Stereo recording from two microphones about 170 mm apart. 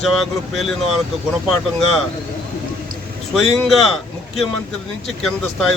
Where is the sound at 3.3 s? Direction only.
Centre (ahead or behind).